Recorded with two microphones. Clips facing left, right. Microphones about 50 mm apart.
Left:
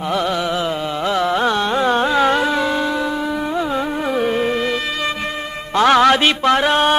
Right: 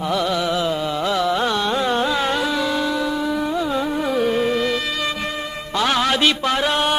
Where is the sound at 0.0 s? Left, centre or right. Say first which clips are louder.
Left 1 dB; left.